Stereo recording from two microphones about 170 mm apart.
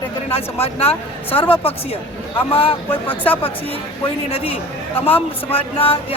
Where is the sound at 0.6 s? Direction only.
35° left (ahead or behind).